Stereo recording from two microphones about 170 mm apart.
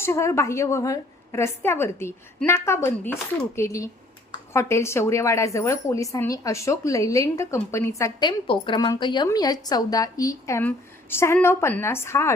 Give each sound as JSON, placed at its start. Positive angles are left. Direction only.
{"t": 0.0, "sound": "a woman's voice", "side_deg": 15}